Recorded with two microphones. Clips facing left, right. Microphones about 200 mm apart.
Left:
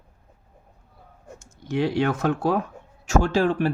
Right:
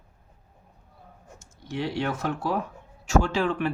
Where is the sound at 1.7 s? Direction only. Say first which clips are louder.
Left 6 dB; 55° left (ahead or behind).